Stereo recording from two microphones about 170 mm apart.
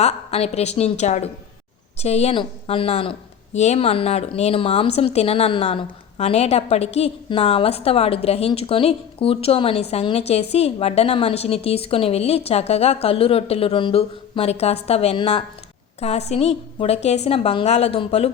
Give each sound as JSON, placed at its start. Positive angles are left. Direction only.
{"t": 0.0, "sound": "a woman's voice", "side_deg": 40}